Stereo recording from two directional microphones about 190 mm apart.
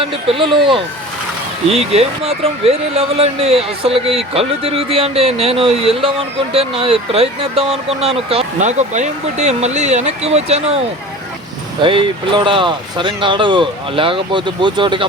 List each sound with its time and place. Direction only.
0.0 s speech: 30° right (ahead or behind)
11.8 s speech: 25° right (ahead or behind)